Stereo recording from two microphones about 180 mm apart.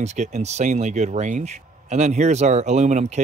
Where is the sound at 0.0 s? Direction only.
40° right (ahead or behind).